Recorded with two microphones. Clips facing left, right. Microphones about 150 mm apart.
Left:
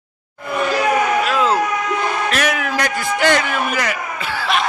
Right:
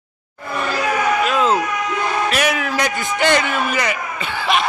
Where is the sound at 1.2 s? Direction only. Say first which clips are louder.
Even; centre (ahead or behind).